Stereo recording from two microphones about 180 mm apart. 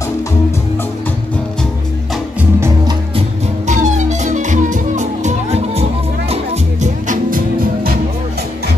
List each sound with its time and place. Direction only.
3.6 s music: 40° right (ahead or behind)